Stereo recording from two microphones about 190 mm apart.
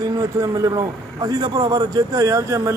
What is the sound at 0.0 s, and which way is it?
A man's voice, 20° right (ahead or behind).